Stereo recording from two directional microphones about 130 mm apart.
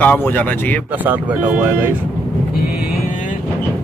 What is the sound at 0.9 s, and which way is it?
Speech, 15° right (ahead or behind).